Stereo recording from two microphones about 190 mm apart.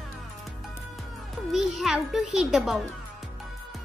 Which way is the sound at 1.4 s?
Centre (ahead or behind).